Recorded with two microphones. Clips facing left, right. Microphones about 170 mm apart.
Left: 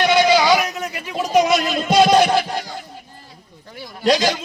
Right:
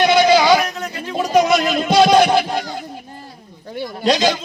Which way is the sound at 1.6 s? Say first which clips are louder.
Right 1 dB; 15° right (ahead or behind).